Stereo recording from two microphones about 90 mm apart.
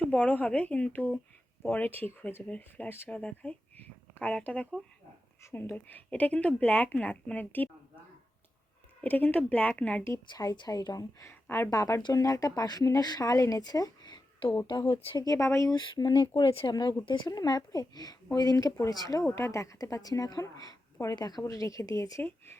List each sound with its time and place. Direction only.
0.1 s a woman's voice: 15° left (ahead or behind)
5.4 s a woman's voice: 25° left (ahead or behind)
9.0 s a woman's voice: 20° left (ahead or behind)
10.3 s a woman's voice: 50° left (ahead or behind)
11.3 s speech: 25° left (ahead or behind)
11.7 s a woman's voice: 40° left (ahead or behind)
14.4 s speech: 75° left (ahead or behind)
14.8 s speech: 90° left
15.2 s a woman's voice: 40° left (ahead or behind)
15.7 s speech: 50° left (ahead or behind)
16.5 s speech: 90° left
16.7 s a woman's voice: 50° left (ahead or behind)
19.2 s a woman's voice: 30° left (ahead or behind)